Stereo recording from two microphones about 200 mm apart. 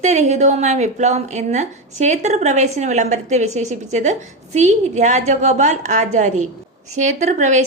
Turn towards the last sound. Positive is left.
turn(degrees=-35)  # may be behind; listen again after turning